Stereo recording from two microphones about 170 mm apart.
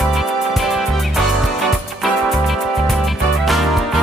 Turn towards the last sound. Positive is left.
turn(degrees=0)  # may be behind; listen again after turning